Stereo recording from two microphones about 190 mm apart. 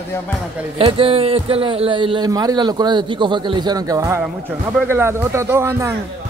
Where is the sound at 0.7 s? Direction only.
30° right (ahead or behind).